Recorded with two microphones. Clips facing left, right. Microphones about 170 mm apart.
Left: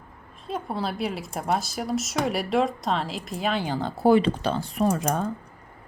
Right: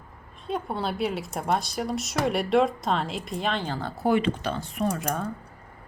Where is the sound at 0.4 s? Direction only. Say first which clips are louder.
Even; centre (ahead or behind); by 4.0 s 20° left (ahead or behind).